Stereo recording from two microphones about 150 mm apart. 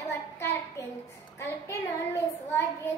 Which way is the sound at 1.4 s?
20° left (ahead or behind).